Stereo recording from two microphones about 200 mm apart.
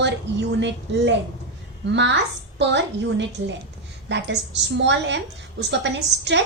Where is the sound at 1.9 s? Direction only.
60° right (ahead or behind).